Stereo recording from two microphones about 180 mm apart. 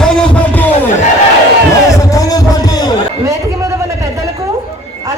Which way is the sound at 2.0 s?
20° left (ahead or behind).